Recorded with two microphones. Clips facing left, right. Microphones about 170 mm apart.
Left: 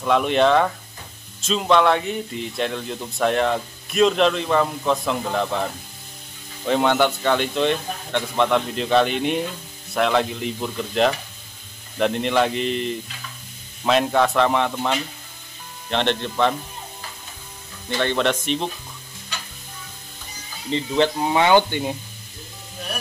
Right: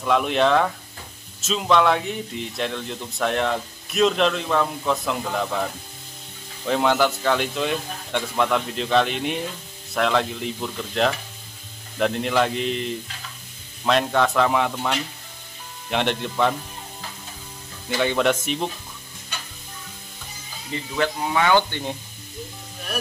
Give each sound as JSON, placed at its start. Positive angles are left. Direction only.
{"t": 0.0, "sound": "speech", "side_deg": 0}
{"t": 6.6, "sound": "speech", "side_deg": 0}
{"t": 17.8, "sound": "speech", "side_deg": -10}
{"t": 20.7, "sound": "speech", "side_deg": 25}